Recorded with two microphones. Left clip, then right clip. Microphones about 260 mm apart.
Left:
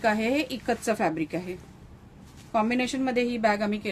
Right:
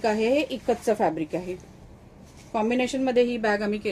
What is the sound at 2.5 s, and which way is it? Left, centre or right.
Speech, left.